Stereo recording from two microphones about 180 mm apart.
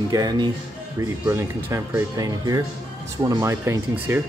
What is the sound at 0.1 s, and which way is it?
Speech, 20° right (ahead or behind).